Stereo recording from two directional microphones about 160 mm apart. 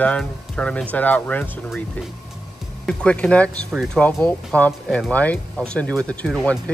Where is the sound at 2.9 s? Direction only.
5° left (ahead or behind).